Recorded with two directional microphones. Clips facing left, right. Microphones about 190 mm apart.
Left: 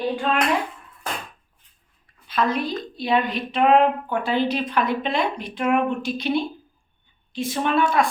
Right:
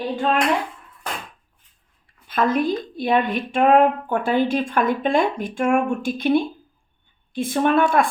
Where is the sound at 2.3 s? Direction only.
50° right (ahead or behind).